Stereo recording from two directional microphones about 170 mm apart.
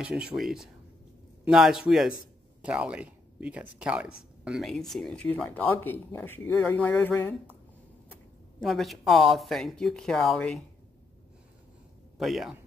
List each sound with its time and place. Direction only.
0.0 s speech: 5° right (ahead or behind); by 7.3 s 15° left (ahead or behind)
8.5 s speech: centre (ahead or behind)
12.2 s speech: centre (ahead or behind)